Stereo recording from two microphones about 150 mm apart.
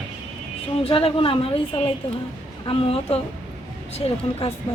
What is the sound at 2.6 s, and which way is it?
Speech, 40° left (ahead or behind).